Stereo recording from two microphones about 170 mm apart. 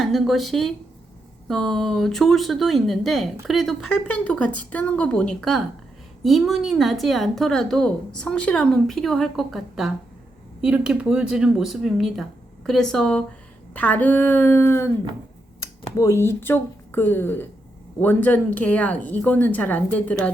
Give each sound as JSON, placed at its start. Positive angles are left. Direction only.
{"t": 0.0, "sound": "a woman's voice", "side_deg": 0}